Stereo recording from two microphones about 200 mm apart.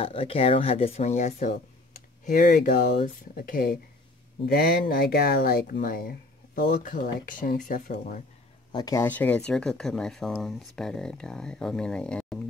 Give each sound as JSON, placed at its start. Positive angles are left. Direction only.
{"t": 0.0, "sound": "speech", "side_deg": 25}
{"t": 8.7, "sound": "speech", "side_deg": 15}